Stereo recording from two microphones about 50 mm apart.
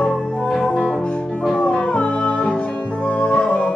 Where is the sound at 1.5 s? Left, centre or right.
Centre.